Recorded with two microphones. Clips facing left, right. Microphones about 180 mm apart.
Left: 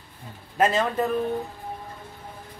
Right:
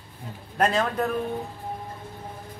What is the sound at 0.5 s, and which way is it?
Speech, centre (ahead or behind).